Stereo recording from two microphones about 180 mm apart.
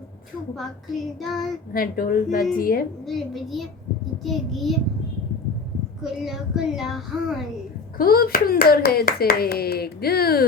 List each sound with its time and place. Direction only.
1.2 s child singing: centre (ahead or behind)
1.7 s a woman's voice: 50° left (ahead or behind)
3.2 s child singing: centre (ahead or behind)
6.0 s child singing: 5° right (ahead or behind)
7.9 s speech: 55° left (ahead or behind)